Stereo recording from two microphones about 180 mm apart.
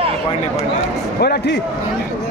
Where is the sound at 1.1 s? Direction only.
60° left (ahead or behind).